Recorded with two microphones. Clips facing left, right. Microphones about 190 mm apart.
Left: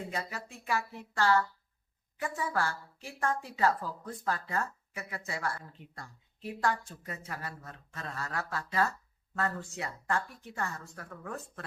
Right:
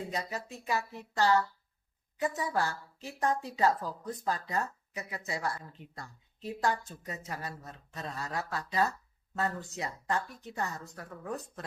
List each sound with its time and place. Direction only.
0.1 s speech: 20° right (ahead or behind)